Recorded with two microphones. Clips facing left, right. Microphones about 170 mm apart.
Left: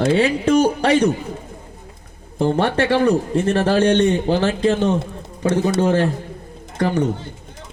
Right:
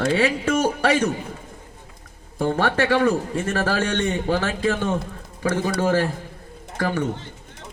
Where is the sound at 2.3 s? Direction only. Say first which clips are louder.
Left 3 dB; 25° left (ahead or behind).